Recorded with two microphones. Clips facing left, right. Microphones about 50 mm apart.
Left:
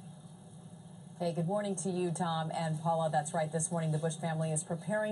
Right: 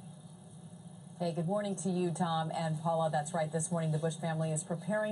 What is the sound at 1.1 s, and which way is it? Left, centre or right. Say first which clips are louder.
A woman's voice: even; centre.